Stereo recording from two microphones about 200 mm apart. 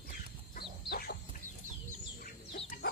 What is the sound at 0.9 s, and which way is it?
Chicken, 55° left (ahead or behind).